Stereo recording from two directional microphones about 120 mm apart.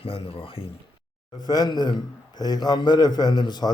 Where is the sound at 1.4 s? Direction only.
35° left (ahead or behind).